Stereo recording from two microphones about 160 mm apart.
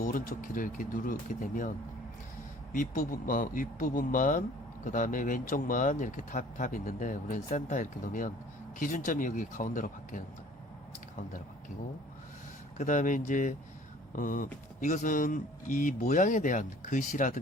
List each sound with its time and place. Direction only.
0.0 s a man's voice: 55° left (ahead or behind)
2.7 s a man's voice: 55° left (ahead or behind)
12.7 s speech: 50° left (ahead or behind)